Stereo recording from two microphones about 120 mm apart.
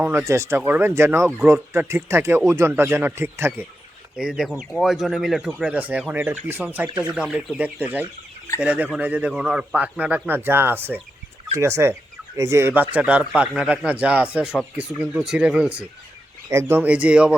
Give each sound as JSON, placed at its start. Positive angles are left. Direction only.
{"t": 0.0, "sound": "speech", "side_deg": -20}
{"t": 4.2, "sound": "a man's voice", "side_deg": -5}
{"t": 16.5, "sound": "a man's voice", "side_deg": -20}